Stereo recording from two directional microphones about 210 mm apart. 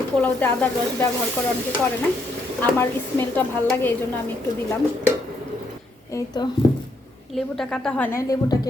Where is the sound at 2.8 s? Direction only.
10° left (ahead or behind).